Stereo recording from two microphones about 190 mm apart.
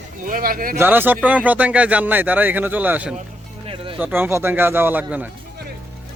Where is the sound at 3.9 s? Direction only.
10° right (ahead or behind).